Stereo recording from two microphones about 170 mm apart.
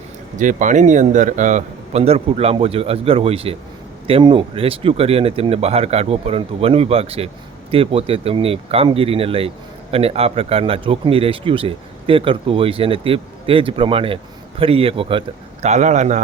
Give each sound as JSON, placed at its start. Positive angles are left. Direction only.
{"t": 0.3, "sound": "speech", "side_deg": -50}
{"t": 15.6, "sound": "a man's voice", "side_deg": -45}